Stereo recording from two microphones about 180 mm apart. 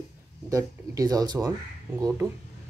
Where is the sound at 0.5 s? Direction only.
20° right (ahead or behind).